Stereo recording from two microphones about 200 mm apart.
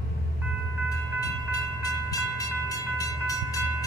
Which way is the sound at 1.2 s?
15° left (ahead or behind).